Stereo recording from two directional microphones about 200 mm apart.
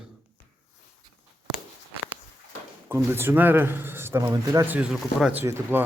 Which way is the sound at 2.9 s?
10° right (ahead or behind).